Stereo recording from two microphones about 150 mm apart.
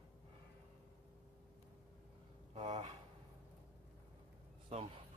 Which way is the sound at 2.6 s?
50° right (ahead or behind).